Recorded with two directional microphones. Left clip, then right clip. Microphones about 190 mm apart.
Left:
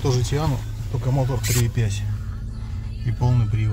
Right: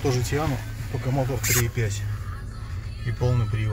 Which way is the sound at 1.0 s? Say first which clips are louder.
Even; 15° left (ahead or behind).